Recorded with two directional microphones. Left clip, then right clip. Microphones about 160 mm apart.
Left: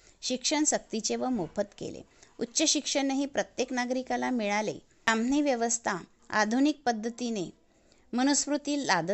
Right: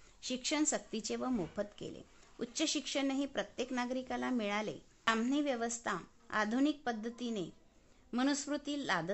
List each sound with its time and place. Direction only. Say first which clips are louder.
0.2 s a woman's voice: left 7 dB; 25° left (ahead or behind)